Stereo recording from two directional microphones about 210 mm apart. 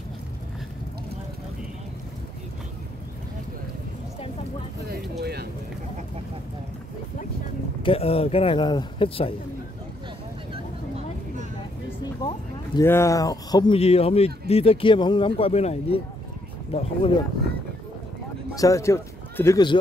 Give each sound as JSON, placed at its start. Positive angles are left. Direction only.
{"t": 5.2, "sound": "speech", "side_deg": -50}
{"t": 7.8, "sound": "speech", "side_deg": 25}
{"t": 12.0, "sound": "speech", "side_deg": 20}
{"t": 18.5, "sound": "speech", "side_deg": 15}